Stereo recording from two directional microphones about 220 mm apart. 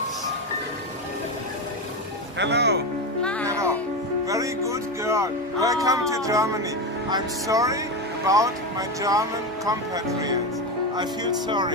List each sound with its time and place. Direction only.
2.3 s speech: 50° right (ahead or behind)
3.4 s music: 15° right (ahead or behind)
4.3 s speech: 15° right (ahead or behind)